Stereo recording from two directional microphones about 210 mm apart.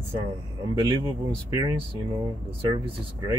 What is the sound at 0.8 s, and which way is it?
Speech, 20° right (ahead or behind).